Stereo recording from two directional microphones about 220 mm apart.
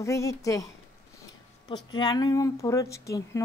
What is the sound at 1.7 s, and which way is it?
A woman's voice, 20° left (ahead or behind).